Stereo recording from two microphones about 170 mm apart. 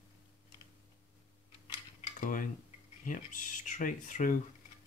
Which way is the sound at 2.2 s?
50° left (ahead or behind).